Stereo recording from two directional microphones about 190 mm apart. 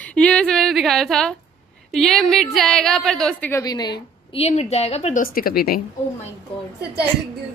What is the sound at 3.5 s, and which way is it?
A woman's voice, 20° left (ahead or behind).